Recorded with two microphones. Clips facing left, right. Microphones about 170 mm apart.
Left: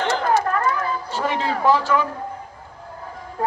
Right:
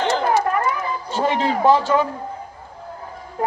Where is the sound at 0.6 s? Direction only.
20° right (ahead or behind).